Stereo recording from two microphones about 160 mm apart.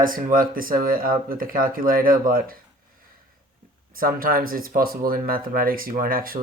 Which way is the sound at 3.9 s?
65° right (ahead or behind).